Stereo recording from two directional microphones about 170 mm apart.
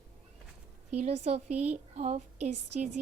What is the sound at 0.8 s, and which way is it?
A woman's voice, 40° right (ahead or behind).